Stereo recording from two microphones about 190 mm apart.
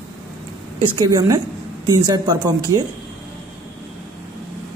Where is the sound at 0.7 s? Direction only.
25° right (ahead or behind).